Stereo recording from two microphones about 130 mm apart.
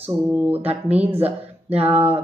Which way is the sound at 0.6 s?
50° right (ahead or behind).